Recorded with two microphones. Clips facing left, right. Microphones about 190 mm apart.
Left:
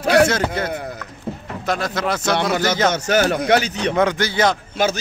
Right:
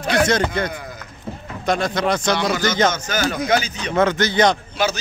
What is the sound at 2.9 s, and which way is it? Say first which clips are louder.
Speech: left 5 dB; 65° left (ahead or behind).